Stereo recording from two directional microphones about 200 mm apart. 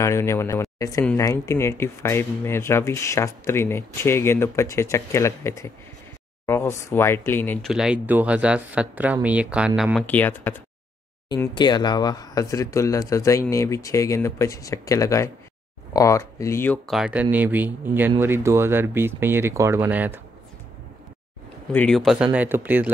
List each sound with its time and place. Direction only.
0.0 s speech: 15° left (ahead or behind)
7.7 s speech: 5° right (ahead or behind)
11.2 s speech: 20° left (ahead or behind); by 20.2 s 10° right (ahead or behind)
21.7 s speech: 5° left (ahead or behind)